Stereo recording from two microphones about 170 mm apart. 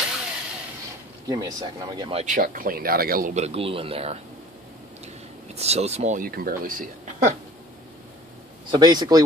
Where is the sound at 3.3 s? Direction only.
35° right (ahead or behind).